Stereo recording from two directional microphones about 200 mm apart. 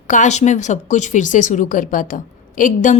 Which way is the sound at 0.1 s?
35° left (ahead or behind).